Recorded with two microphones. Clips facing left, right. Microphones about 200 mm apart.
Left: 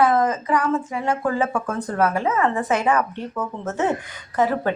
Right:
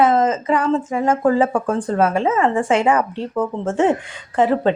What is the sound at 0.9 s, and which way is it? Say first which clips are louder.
Speech: right 6 dB; 45° right (ahead or behind).